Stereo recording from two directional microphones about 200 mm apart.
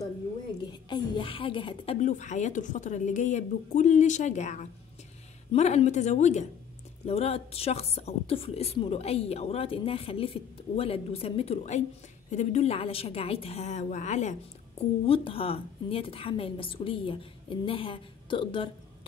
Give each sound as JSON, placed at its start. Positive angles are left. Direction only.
{"t": 0.8, "sound": "a woman's voice", "side_deg": 25}